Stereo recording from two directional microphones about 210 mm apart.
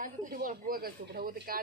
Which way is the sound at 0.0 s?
40° right (ahead or behind).